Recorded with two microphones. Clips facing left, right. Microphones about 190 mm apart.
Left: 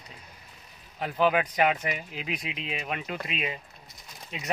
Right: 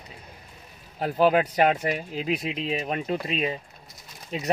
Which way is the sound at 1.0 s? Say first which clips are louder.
Right 4 dB; 40° right (ahead or behind).